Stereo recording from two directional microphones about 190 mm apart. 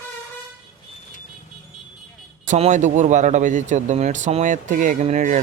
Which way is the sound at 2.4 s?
40° right (ahead or behind).